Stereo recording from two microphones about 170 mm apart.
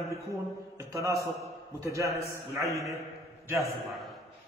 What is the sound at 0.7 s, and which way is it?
A man's voice, 20° right (ahead or behind).